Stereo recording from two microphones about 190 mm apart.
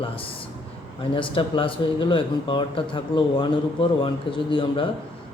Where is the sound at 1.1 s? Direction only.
25° left (ahead or behind).